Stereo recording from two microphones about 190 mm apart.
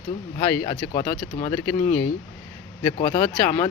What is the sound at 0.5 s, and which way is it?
Speech, 10° left (ahead or behind).